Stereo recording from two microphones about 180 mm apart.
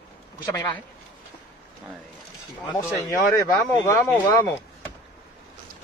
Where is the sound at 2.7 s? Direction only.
15° left (ahead or behind).